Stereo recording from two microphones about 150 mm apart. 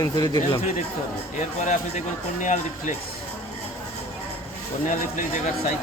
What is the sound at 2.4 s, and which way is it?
Speech, 55° left (ahead or behind).